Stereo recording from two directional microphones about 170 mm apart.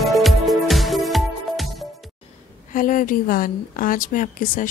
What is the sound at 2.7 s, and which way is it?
A woman's voice, 55° left (ahead or behind).